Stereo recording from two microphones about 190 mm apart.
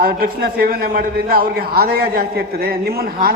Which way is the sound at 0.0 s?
55° right (ahead or behind).